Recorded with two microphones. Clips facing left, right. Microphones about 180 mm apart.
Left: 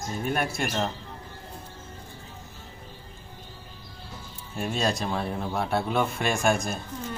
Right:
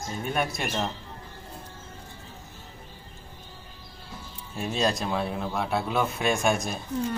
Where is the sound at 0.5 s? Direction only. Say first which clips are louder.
Left 1 dB; centre (ahead or behind).